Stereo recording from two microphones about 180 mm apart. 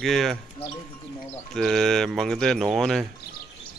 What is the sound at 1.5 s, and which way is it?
Speech, centre (ahead or behind).